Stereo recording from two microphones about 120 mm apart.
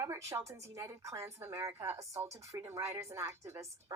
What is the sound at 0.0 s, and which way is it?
A woman's voice, 20° right (ahead or behind).